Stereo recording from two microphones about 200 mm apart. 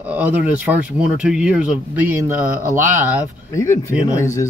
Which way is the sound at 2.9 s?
10° right (ahead or behind).